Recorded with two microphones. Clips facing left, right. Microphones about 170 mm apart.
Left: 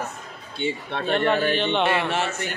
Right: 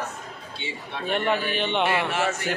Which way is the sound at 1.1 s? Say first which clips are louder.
Left 4 dB; 10° right (ahead or behind).